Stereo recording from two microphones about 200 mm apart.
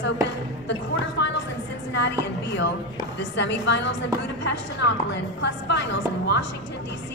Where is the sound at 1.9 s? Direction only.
60° left (ahead or behind).